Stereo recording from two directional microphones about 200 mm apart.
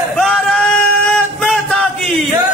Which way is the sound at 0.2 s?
5° left (ahead or behind).